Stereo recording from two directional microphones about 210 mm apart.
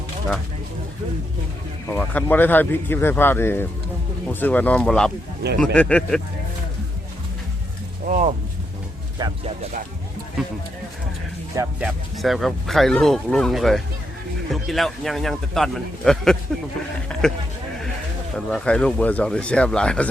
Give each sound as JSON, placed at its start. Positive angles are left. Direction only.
{"t": 1.9, "sound": "speech", "side_deg": 5}
{"t": 8.0, "sound": "speech", "side_deg": -35}
{"t": 9.1, "sound": "speech", "side_deg": -20}
{"t": 11.5, "sound": "speech", "side_deg": -15}
{"t": 11.9, "sound": "speech", "side_deg": 0}
{"t": 18.3, "sound": "speech", "side_deg": 5}